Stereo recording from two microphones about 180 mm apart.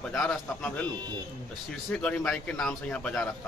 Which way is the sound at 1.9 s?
5° left (ahead or behind).